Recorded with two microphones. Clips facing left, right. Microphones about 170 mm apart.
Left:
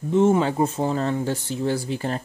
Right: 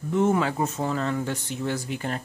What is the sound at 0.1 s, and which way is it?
Speech, 25° left (ahead or behind).